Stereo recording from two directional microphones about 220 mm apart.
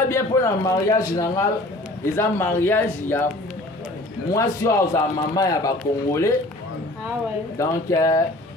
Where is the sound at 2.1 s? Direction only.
10° left (ahead or behind).